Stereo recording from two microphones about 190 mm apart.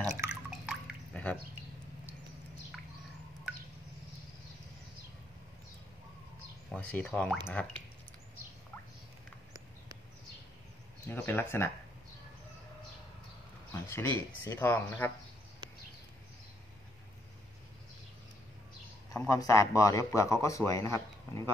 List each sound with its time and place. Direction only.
0.0 s drip: 15° right (ahead or behind)
1.1 s a sound: 10° left (ahead or behind)
6.7 s speech: 5° left (ahead or behind)
11.1 s a man's voice: 10° left (ahead or behind)
13.8 s a man's voice: 10° left (ahead or behind)
19.2 s a man's voice: 15° left (ahead or behind)